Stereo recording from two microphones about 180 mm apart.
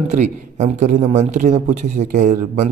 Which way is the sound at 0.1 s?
40° right (ahead or behind).